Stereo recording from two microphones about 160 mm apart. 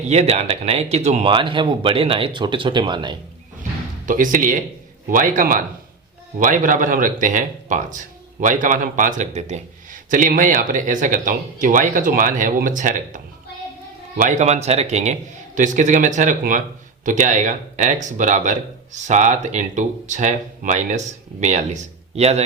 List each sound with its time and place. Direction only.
0.1 s speech: 45° right (ahead or behind)
4.0 s a man's voice: 55° right (ahead or behind); by 22.4 s 40° right (ahead or behind)